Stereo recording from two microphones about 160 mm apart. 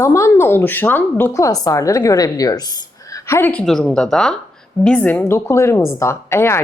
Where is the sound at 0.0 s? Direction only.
20° left (ahead or behind).